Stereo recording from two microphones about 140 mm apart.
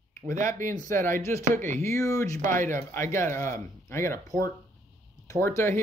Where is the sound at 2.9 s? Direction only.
20° left (ahead or behind).